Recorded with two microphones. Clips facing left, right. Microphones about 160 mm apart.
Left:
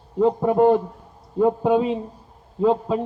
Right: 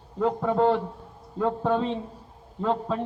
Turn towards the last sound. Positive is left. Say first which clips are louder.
# left 7 dB
turn(degrees=10)  # may be behind; listen again after turning